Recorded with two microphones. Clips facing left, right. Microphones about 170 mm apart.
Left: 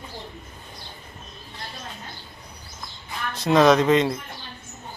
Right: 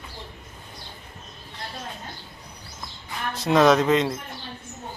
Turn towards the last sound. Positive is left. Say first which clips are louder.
# left 1 dB
turn(degrees=0)  # may be behind; listen again after turning